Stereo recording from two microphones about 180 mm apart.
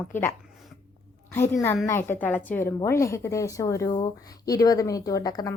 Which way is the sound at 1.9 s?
10° left (ahead or behind).